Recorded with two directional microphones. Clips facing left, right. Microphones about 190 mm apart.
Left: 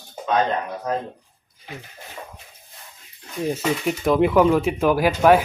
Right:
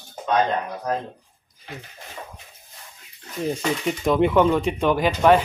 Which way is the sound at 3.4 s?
5° left (ahead or behind).